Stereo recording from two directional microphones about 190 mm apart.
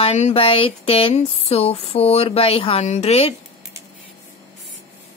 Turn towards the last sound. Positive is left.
turn(degrees=30)  # may be behind; listen again after turning